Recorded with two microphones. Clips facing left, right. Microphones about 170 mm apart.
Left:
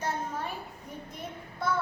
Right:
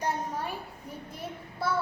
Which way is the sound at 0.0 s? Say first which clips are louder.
Right 2 dB; 10° right (ahead or behind).